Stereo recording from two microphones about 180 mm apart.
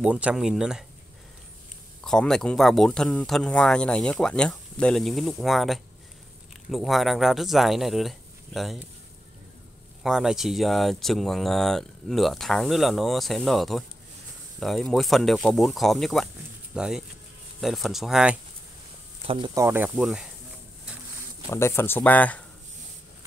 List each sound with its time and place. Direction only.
0.0 s speech: 5° right (ahead or behind)
2.0 s speech: 5° left (ahead or behind)
10.0 s speech: centre (ahead or behind)
19.2 s speech: 30° right (ahead or behind)
19.5 s speech: 15° right (ahead or behind)
20.0 s speech: centre (ahead or behind)
21.5 s speech: 15° left (ahead or behind)